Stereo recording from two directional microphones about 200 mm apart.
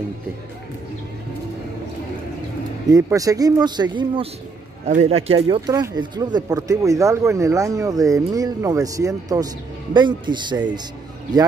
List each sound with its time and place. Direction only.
2.9 s speech: 15° right (ahead or behind)